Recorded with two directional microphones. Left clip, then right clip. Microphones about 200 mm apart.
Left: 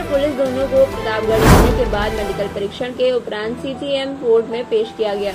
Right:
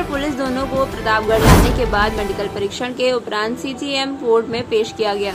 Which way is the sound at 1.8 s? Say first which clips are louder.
Right 2 dB; 15° right (ahead or behind).